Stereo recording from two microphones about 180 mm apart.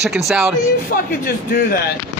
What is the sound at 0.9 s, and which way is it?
Speech, 55° left (ahead or behind).